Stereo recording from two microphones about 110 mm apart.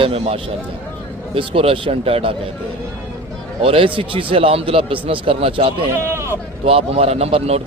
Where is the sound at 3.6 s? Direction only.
55° right (ahead or behind).